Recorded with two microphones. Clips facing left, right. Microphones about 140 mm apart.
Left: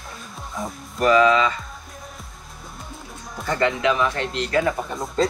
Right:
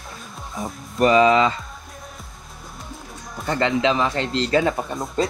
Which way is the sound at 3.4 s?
25° right (ahead or behind).